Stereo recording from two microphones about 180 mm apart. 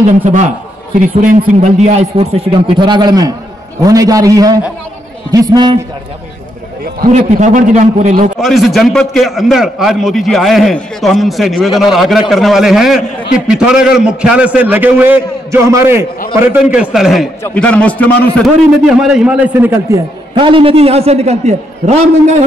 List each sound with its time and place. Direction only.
0.0 s a man's voice: 45° right (ahead or behind); by 5.8 s 25° right (ahead or behind)
7.1 s a man's voice: 40° right (ahead or behind)
8.4 s a man's voice: centre (ahead or behind)
18.9 s a man's voice: 5° right (ahead or behind)
20.3 s a man's voice: 30° right (ahead or behind)